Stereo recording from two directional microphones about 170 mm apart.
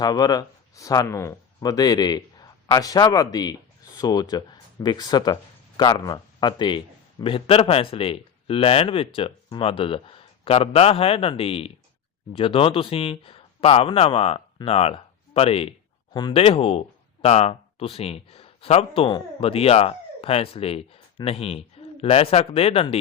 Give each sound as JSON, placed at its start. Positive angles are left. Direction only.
{"t": 0.0, "sound": "a man's voice", "side_deg": 25}